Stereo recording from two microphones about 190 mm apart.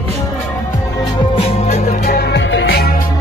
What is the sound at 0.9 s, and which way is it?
Music, 20° left (ahead or behind).